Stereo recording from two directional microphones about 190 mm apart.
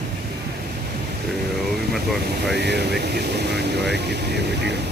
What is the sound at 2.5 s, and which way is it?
Speech, 60° right (ahead or behind).